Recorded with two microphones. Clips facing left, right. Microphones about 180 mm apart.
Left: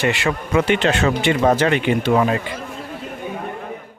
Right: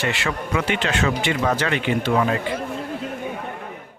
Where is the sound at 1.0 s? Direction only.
30° left (ahead or behind).